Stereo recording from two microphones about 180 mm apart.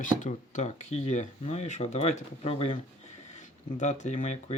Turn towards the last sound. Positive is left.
turn(degrees=40)  # may be behind; listen again after turning